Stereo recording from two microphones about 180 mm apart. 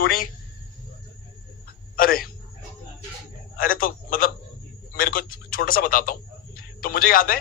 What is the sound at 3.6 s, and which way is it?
A man's voice, 50° left (ahead or behind).